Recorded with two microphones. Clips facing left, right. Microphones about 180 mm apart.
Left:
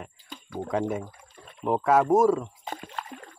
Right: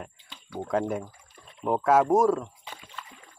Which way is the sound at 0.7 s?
Centre (ahead or behind).